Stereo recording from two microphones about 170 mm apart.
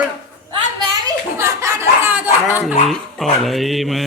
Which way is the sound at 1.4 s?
15° right (ahead or behind).